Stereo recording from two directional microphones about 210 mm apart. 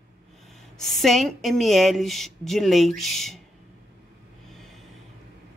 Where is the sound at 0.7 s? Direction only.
Centre (ahead or behind).